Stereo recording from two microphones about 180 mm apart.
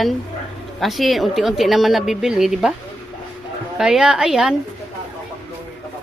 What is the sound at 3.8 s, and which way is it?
Speech, 5° right (ahead or behind).